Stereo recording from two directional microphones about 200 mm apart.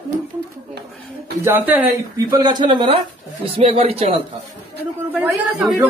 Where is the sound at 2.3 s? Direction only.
20° right (ahead or behind).